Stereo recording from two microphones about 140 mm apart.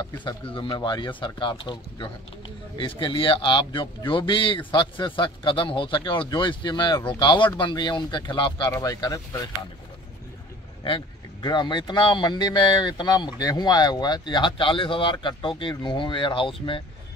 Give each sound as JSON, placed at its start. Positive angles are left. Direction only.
{"t": 0.6, "sound": "a man's voice", "side_deg": 35}
{"t": 10.8, "sound": "a man's voice", "side_deg": 40}